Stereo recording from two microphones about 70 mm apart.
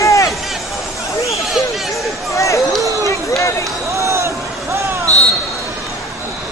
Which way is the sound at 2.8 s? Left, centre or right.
Right.